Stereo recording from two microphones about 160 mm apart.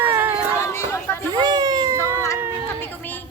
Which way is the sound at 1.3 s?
25° right (ahead or behind).